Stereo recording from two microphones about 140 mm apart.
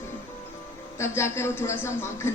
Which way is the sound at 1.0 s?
20° left (ahead or behind).